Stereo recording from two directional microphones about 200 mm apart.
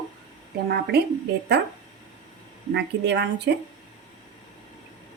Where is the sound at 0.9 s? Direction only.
55° right (ahead or behind).